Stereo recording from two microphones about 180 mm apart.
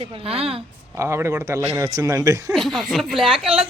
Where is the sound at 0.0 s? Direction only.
30° right (ahead or behind).